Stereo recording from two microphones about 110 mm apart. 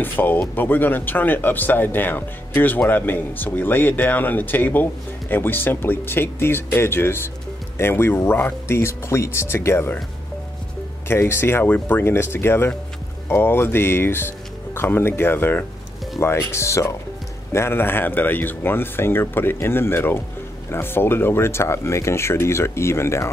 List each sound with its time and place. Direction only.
0.0 s speech: 20° left (ahead or behind)
11.1 s speech: 20° left (ahead or behind)